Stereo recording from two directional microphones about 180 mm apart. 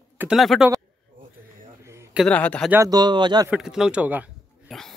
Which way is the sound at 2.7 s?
20° right (ahead or behind).